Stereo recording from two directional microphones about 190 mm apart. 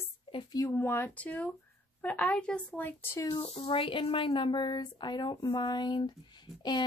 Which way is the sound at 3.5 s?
25° left (ahead or behind).